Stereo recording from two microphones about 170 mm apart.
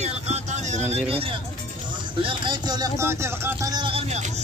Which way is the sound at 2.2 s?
25° right (ahead or behind).